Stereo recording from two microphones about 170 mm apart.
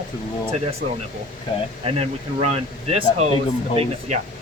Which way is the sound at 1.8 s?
35° right (ahead or behind).